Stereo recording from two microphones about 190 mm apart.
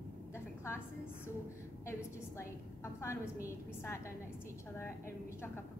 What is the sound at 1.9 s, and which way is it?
A woman's voice, 15° left (ahead or behind).